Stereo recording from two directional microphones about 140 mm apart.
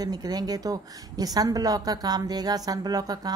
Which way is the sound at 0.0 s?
30° right (ahead or behind).